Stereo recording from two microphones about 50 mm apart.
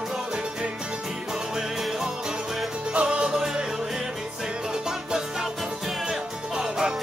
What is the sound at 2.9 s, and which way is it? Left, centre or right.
Music, right.